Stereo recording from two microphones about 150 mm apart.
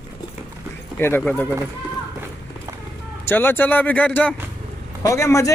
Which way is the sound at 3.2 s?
15° left (ahead or behind).